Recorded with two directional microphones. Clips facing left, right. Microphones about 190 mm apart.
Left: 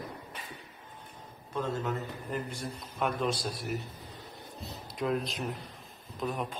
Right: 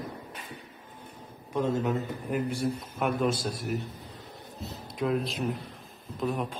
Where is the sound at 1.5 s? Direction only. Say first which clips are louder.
Right 5 dB; 15° right (ahead or behind).